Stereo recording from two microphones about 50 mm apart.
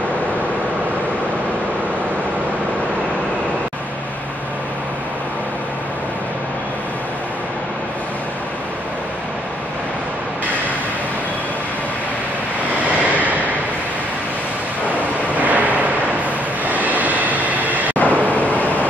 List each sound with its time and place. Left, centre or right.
15.3 s vehicle: right
17.9 s vehicle: left